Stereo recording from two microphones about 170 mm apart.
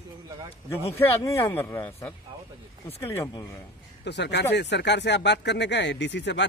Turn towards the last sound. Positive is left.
turn(degrees=90)